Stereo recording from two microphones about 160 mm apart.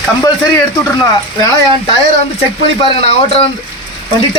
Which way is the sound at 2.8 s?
35° left (ahead or behind).